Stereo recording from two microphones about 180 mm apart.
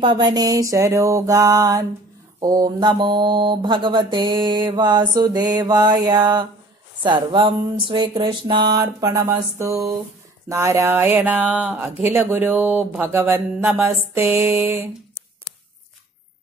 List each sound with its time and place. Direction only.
0.0 s mantra: 25° right (ahead or behind)
10.5 s speech: 15° right (ahead or behind)